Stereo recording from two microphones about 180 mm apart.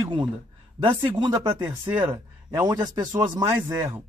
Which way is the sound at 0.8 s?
30° right (ahead or behind).